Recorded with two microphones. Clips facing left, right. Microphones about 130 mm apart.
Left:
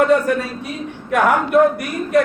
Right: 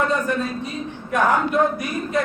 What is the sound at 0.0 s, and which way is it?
A woman's voice, 70° left (ahead or behind).